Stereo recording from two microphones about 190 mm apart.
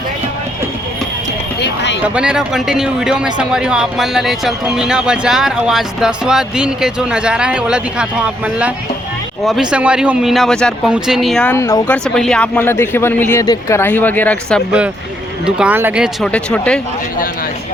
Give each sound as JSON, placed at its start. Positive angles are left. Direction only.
{"t": 2.0, "sound": "a man's voice", "side_deg": -5}
{"t": 11.5, "sound": "speech", "side_deg": 15}
{"t": 12.0, "sound": "speech", "side_deg": 5}
{"t": 15.4, "sound": "speech", "side_deg": -5}
{"t": 16.2, "sound": "a man's voice", "side_deg": 5}